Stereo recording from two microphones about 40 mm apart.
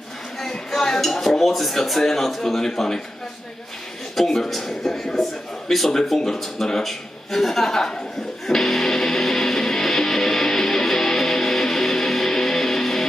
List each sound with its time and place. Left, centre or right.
0.4 s a sound: centre
1.0 s a man's voice: centre
4.5 s a man's voice: centre
8.5 s music: centre